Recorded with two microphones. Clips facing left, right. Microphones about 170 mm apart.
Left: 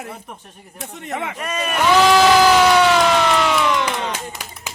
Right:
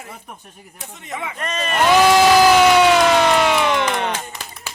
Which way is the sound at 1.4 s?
10° left (ahead or behind).